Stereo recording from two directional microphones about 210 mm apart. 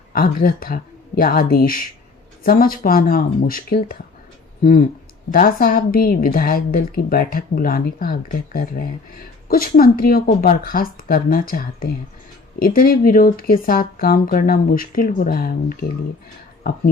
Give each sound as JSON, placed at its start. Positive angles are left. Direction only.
{"t": 0.1, "sound": "a woman's voice", "side_deg": 40}